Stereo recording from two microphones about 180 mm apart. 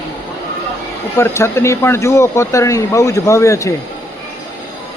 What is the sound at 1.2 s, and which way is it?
Speech, 15° left (ahead or behind).